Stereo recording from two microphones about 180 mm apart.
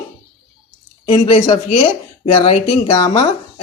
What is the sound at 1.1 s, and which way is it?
Speech, 30° left (ahead or behind).